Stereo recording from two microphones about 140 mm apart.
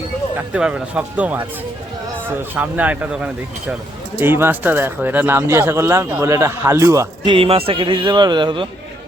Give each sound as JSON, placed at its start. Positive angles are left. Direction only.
{"t": 0.3, "sound": "speech", "side_deg": -10}
{"t": 7.3, "sound": "speech", "side_deg": -40}